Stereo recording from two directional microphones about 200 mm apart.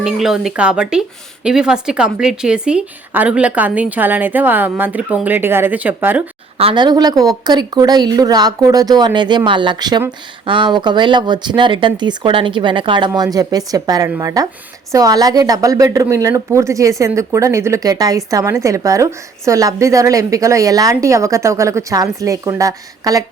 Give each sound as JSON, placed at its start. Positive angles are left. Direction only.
{"t": 0.0, "sound": "a woman's voice", "side_deg": 0}
{"t": 6.6, "sound": "a woman's voice", "side_deg": -25}